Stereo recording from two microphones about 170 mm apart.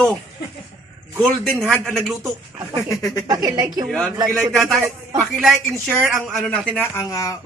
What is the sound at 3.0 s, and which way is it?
Speech, 20° left (ahead or behind).